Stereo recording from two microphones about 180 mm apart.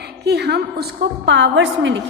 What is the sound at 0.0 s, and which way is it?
A woman's voice, 65° right (ahead or behind).